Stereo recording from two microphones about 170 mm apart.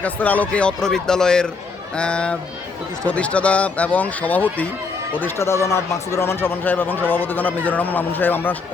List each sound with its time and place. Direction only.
0.0 s speech: 10° left (ahead or behind)